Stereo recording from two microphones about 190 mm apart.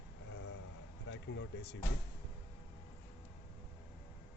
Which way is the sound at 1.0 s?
75° left (ahead or behind).